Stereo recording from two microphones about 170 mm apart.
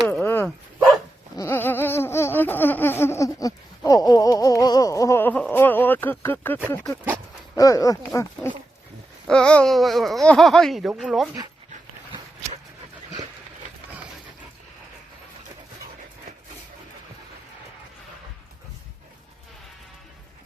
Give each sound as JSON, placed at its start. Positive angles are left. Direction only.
{"t": 0.1, "sound": "dog", "side_deg": 10}
{"t": 1.4, "sound": "laughter", "side_deg": 15}
{"t": 7.5, "sound": "a sound", "side_deg": 20}
{"t": 9.2, "sound": "babbling", "side_deg": 5}